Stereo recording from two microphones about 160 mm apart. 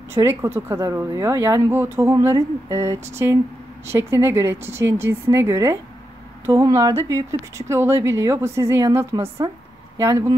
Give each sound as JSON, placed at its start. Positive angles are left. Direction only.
{"t": 0.1, "sound": "speech", "side_deg": -15}